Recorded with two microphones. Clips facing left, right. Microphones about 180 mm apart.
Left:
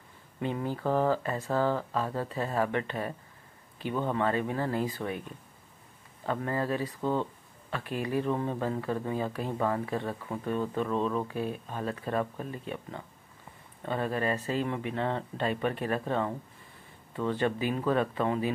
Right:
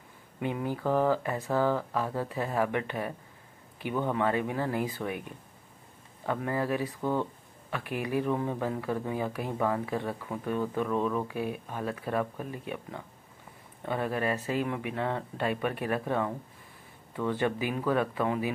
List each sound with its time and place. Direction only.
0.4 s speech: 15° right (ahead or behind)
0.8 s speech: 15° left (ahead or behind)
1.1 s speech: 15° right (ahead or behind)
6.4 s speech: 10° right (ahead or behind)
13.8 s speech: 10° right (ahead or behind)
17.3 s speech: 10° right (ahead or behind)